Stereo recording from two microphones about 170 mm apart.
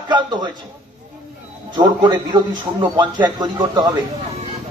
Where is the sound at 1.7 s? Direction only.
25° right (ahead or behind).